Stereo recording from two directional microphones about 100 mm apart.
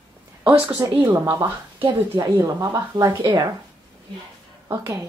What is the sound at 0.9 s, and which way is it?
Speech, 20° right (ahead or behind).